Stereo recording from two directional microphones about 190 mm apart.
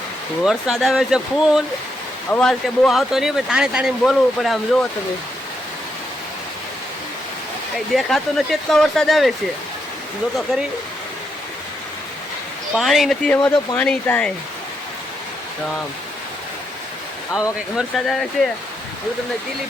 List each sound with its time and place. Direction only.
0.4 s speech: centre (ahead or behind)
7.9 s speech: centre (ahead or behind)
12.7 s speech: centre (ahead or behind)
17.7 s speech: centre (ahead or behind)